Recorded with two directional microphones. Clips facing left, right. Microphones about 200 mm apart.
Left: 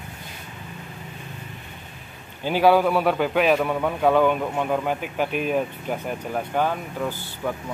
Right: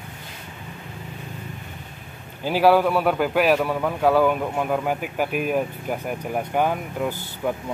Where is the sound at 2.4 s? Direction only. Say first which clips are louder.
Even; 5° right (ahead or behind).